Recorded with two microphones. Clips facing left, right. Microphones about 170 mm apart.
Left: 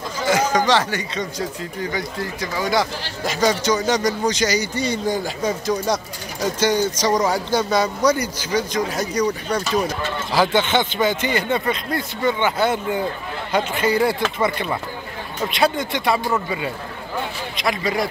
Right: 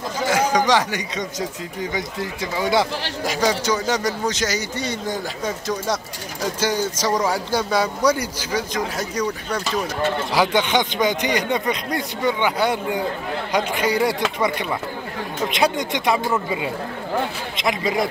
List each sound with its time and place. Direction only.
0.3 s speech: 15° right (ahead or behind)
3.3 s a man's voice: 10° right (ahead or behind)
10.3 s speech: 10° right (ahead or behind)